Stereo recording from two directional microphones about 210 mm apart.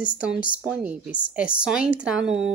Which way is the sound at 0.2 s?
5° right (ahead or behind).